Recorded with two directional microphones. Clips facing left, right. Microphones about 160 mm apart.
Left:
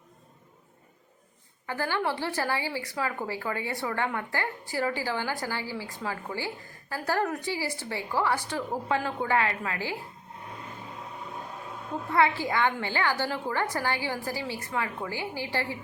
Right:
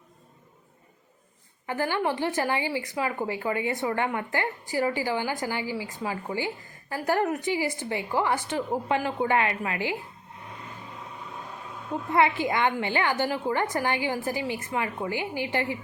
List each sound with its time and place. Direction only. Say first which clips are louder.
1.6 s a woman's voice: right 3 dB; 15° right (ahead or behind)
12.1 s a woman's voice: right 2 dB; 20° right (ahead or behind)